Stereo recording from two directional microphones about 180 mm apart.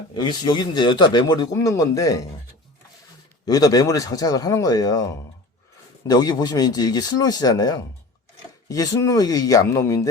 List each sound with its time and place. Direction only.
0.1 s a man's voice: 25° left (ahead or behind)
3.4 s a man's voice: 20° left (ahead or behind)